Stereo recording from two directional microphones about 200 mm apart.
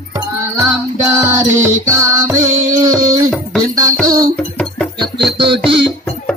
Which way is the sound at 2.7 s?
15° right (ahead or behind).